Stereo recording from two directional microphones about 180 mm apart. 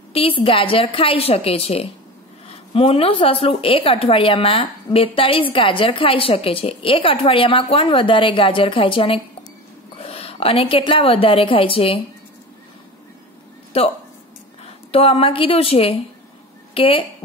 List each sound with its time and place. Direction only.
0.1 s a woman's voice: 30° left (ahead or behind)
13.7 s a woman's voice: 35° left (ahead or behind)